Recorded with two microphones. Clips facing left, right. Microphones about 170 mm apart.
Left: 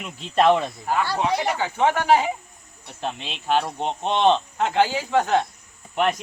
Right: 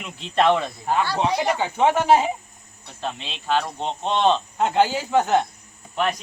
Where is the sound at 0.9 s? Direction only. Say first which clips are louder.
Right 1 dB; 20° right (ahead or behind).